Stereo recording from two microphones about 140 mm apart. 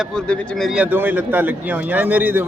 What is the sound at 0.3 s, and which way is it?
Speech, centre (ahead or behind).